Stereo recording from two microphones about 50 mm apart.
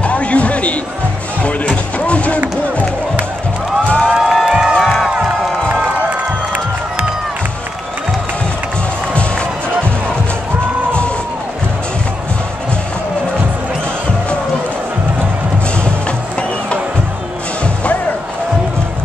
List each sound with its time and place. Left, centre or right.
0.0 s music: left
2.0 s music: left
3.8 s a sound: left
4.2 s music: centre
4.5 s music: centre
4.8 s music: centre